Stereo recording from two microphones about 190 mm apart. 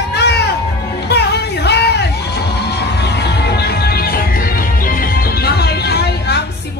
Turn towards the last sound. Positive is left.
turn(degrees=60)  # may be behind; listen again after turning